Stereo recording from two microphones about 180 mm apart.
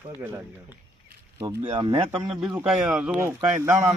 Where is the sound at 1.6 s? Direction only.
35° right (ahead or behind).